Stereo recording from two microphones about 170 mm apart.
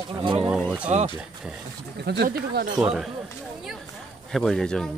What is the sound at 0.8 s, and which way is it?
Speech, 35° right (ahead or behind).